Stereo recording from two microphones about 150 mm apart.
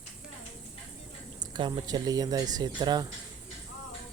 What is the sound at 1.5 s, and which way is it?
Speech, 30° right (ahead or behind).